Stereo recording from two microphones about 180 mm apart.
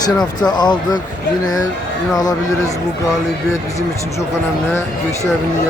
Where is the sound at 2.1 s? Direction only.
20° left (ahead or behind).